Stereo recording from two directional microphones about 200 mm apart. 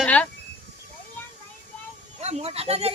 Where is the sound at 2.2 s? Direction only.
30° right (ahead or behind).